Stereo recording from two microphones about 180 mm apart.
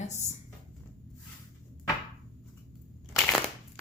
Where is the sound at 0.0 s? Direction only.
40° left (ahead or behind).